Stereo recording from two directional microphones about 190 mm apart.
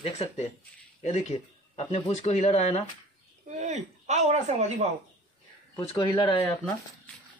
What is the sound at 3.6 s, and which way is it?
Speech, 35° right (ahead or behind).